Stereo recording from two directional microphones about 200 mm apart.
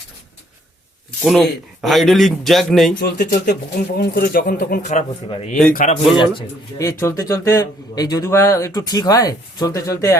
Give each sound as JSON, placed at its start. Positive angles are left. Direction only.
{"t": 1.2, "sound": "a man's voice", "side_deg": 0}
{"t": 3.0, "sound": "speech", "side_deg": 50}
{"t": 6.1, "sound": "a man's voice", "side_deg": 20}